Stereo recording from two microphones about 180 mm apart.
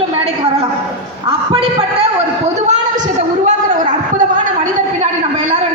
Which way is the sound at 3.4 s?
45° right (ahead or behind).